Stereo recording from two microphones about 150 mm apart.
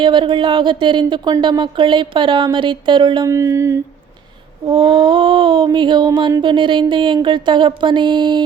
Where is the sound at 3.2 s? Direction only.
20° right (ahead or behind).